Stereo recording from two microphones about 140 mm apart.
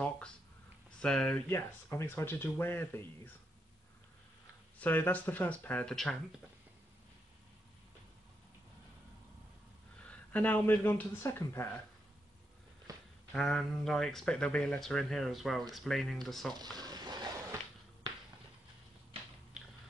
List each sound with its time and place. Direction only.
1.0 s speech: 5° left (ahead or behind)
1.5 s speech: 20° left (ahead or behind)
4.7 s speech: 15° left (ahead or behind)
9.9 s speech: 10° left (ahead or behind)
12.9 s a sound: 25° right (ahead or behind)
13.3 s speech: 5° left (ahead or behind)
16.7 s a sound: 30° right (ahead or behind)